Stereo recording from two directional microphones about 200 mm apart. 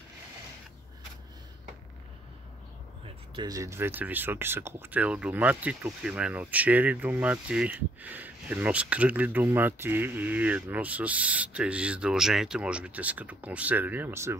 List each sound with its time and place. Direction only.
3.3 s speech: 15° right (ahead or behind)